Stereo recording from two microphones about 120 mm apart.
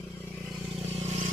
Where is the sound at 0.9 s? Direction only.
60° right (ahead or behind).